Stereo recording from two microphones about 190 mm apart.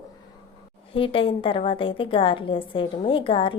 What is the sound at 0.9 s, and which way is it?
A woman's voice, 25° left (ahead or behind).